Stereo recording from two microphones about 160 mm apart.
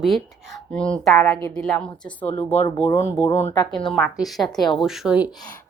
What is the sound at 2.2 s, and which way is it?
Speech, 40° left (ahead or behind).